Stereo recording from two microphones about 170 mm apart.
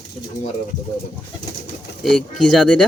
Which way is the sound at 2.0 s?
Centre (ahead or behind).